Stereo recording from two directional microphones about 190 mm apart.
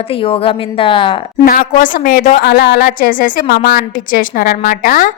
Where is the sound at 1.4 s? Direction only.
45° left (ahead or behind).